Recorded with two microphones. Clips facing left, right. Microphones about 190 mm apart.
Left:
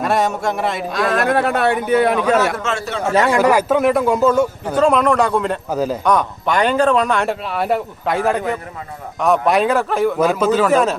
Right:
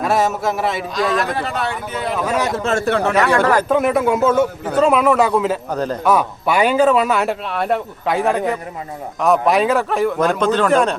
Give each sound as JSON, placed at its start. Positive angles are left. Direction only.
{"t": 0.0, "sound": "speech", "side_deg": 0}
{"t": 1.4, "sound": "speech", "side_deg": 60}
{"t": 2.1, "sound": "speech", "side_deg": -5}
{"t": 2.6, "sound": "a man's voice", "side_deg": -50}
{"t": 3.1, "sound": "speech", "side_deg": 25}
{"t": 3.3, "sound": "speech", "side_deg": 10}
{"t": 5.7, "sound": "a man's voice", "side_deg": 5}
{"t": 6.1, "sound": "speech", "side_deg": -5}